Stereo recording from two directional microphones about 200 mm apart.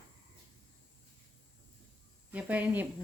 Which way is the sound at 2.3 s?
10° right (ahead or behind).